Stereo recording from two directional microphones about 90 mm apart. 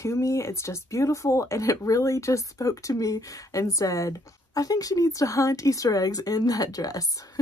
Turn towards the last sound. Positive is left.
turn(degrees=40)  # may be behind; listen again after turning